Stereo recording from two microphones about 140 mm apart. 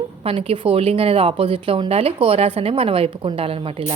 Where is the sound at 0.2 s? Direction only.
40° right (ahead or behind).